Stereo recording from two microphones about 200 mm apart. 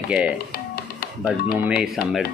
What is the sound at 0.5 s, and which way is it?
Music, 50° left (ahead or behind).